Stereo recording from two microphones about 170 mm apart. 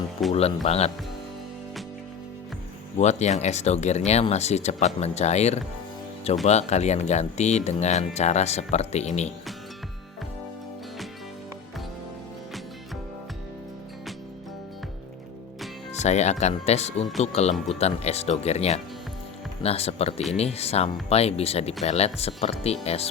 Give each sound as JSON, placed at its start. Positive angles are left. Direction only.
{"t": 0.3, "sound": "speech", "side_deg": 35}
{"t": 3.0, "sound": "speech", "side_deg": 40}
{"t": 15.9, "sound": "speech", "side_deg": 40}